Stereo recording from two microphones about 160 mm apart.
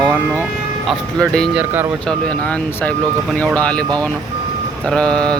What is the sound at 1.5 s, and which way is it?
Speech, 15° right (ahead or behind).